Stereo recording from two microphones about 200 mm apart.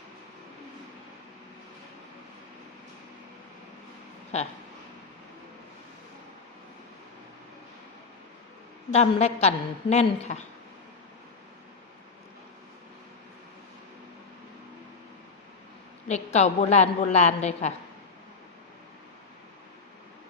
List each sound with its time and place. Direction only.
8.9 s a woman's voice: 35° left (ahead or behind)
16.0 s a woman's voice: 35° left (ahead or behind)